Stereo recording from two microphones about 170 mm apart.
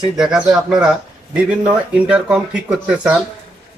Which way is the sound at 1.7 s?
5° right (ahead or behind).